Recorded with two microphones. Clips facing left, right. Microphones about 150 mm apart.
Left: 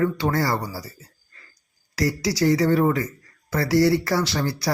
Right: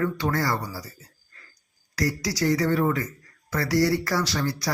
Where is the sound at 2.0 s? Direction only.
25° left (ahead or behind).